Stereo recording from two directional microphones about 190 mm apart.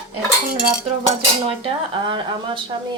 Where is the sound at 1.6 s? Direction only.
25° right (ahead or behind).